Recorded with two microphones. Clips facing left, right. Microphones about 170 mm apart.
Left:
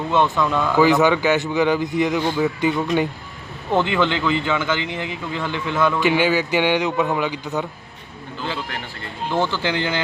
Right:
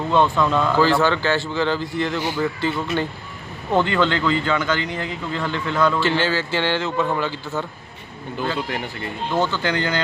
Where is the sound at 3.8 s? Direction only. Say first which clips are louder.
Even; 15° left (ahead or behind).